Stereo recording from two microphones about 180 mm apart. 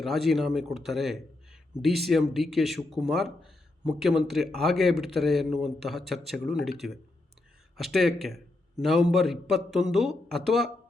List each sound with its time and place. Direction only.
0.0 s speech: centre (ahead or behind)